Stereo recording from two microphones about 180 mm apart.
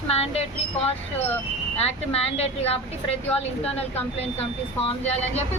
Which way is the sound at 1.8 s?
35° left (ahead or behind).